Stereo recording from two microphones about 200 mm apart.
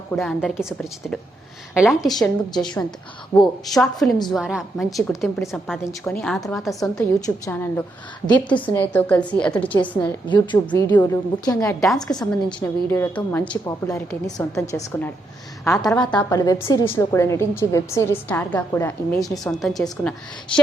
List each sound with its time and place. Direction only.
0.2 s a woman's voice: centre (ahead or behind)
6.9 s a woman's voice: 15° left (ahead or behind)
10.2 s a woman's voice: 25° left (ahead or behind)
11.8 s a woman's voice: centre (ahead or behind)
16.3 s a woman's voice: 15° left (ahead or behind)
19.2 s a woman's voice: centre (ahead or behind)